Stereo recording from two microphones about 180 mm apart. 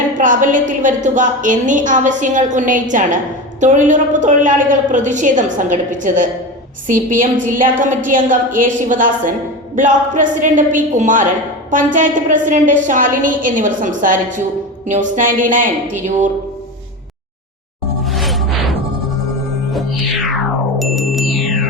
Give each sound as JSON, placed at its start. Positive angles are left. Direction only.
{"t": 0.2, "sound": "a woman's voice", "side_deg": -45}
{"t": 18.0, "sound": "music", "side_deg": 0}
{"t": 20.7, "sound": "music", "side_deg": 0}